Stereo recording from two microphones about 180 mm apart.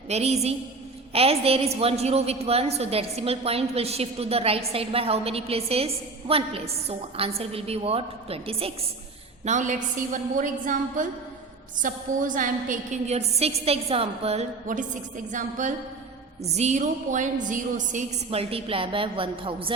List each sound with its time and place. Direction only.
0.1 s a woman's voice: 35° right (ahead or behind)